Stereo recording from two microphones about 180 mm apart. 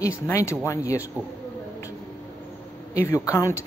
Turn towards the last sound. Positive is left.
turn(degrees=15)  # may be behind; listen again after turning